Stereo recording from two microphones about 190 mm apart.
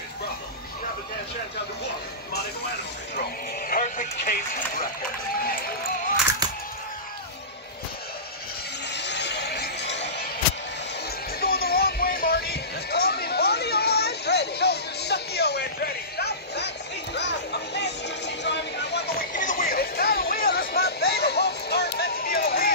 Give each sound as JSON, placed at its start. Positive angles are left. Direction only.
{"t": 3.2, "sound": "music", "side_deg": 50}
{"t": 8.9, "sound": "music", "side_deg": 65}
{"t": 11.3, "sound": "music", "side_deg": 55}